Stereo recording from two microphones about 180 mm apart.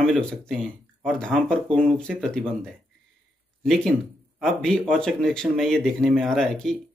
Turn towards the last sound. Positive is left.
turn(degrees=5)  # may be behind; listen again after turning